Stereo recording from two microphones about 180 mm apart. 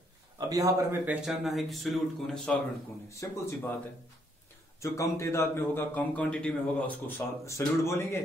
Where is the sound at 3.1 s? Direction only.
15° left (ahead or behind).